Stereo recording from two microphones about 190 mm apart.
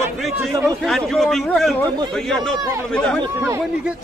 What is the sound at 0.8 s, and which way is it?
A man's voice, centre (ahead or behind).